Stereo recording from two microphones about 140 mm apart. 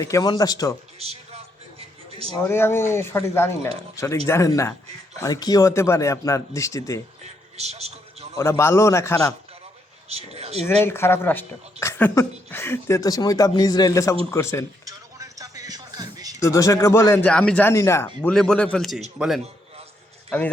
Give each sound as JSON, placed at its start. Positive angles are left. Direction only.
{"t": 0.0, "sound": "speech", "side_deg": 25}
{"t": 0.9, "sound": "a sound", "side_deg": -45}
{"t": 2.5, "sound": "speech", "side_deg": 15}
{"t": 7.5, "sound": "a sound", "side_deg": -50}
{"t": 8.4, "sound": "speech", "side_deg": 20}
{"t": 10.1, "sound": "speech", "side_deg": -50}
{"t": 10.7, "sound": "speech", "side_deg": 15}
{"t": 14.8, "sound": "music", "side_deg": -25}
{"t": 16.4, "sound": "speech", "side_deg": 25}
{"t": 17.2, "sound": "speech", "side_deg": 5}